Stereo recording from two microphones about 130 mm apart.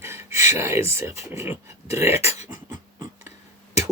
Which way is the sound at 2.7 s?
25° right (ahead or behind).